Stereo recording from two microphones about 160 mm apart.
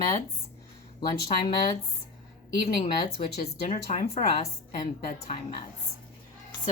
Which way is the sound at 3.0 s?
80° left.